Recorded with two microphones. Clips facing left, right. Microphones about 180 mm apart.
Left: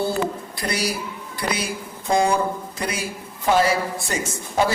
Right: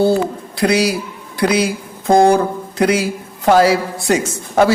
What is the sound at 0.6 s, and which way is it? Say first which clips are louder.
A man's voice: right 11 dB; 85° right.